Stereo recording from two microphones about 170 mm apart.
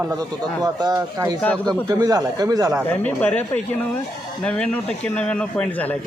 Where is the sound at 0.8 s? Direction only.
20° right (ahead or behind).